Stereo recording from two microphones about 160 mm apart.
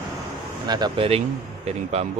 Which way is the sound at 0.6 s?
25° right (ahead or behind).